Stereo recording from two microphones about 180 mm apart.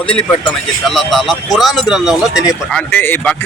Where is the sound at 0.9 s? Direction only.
Centre (ahead or behind).